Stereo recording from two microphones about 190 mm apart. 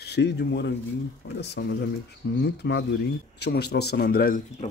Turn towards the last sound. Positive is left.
turn(degrees=50)  # may be behind; listen again after turning